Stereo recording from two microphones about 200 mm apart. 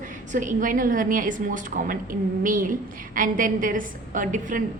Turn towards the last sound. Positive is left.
turn(degrees=-40)  # may be behind; listen again after turning